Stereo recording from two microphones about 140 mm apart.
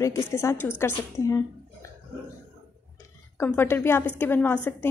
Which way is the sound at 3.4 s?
15° left (ahead or behind).